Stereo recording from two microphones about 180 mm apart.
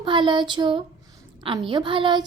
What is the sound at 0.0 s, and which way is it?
A woman's voice, 25° right (ahead or behind).